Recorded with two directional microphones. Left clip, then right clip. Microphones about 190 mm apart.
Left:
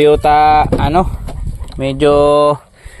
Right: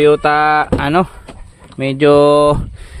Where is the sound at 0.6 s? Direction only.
15° right (ahead or behind).